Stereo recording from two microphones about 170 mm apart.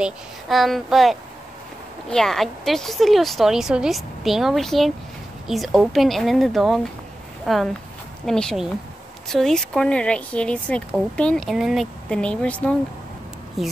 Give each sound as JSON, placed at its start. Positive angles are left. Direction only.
{"t": 0.0, "sound": "speech", "side_deg": 0}